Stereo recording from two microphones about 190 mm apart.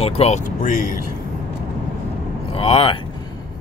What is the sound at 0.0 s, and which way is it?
Speech, 35° left (ahead or behind).